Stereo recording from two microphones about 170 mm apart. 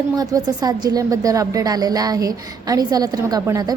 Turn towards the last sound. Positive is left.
turn(degrees=-20)  # may be behind; listen again after turning